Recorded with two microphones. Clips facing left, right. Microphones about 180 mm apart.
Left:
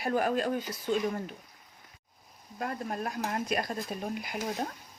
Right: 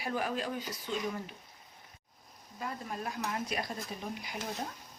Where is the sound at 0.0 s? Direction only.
50° left (ahead or behind).